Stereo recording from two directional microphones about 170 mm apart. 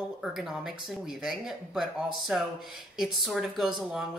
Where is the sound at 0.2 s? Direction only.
Centre (ahead or behind).